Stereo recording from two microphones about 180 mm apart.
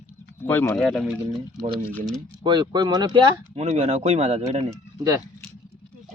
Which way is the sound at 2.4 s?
25° right (ahead or behind).